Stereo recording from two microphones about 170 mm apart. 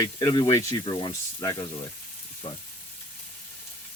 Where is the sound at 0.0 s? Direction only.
20° left (ahead or behind).